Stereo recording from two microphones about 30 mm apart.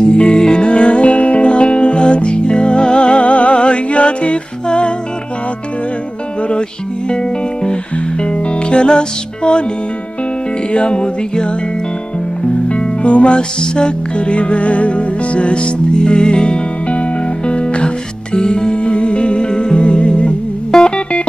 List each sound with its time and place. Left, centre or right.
0.0 s music: left
8.2 s music: left
10.7 s music: left
12.6 s music: left
16.0 s music: left
20.7 s music: left